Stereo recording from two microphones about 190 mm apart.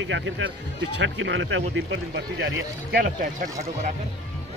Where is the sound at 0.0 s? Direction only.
75° right (ahead or behind); by 3.3 s 50° right (ahead or behind).